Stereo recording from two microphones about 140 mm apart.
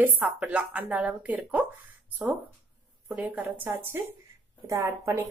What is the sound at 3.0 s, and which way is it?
Speech, 10° right (ahead or behind).